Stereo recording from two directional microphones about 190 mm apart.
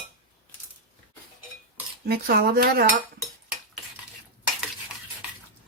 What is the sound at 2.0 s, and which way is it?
Speech, 55° right (ahead or behind).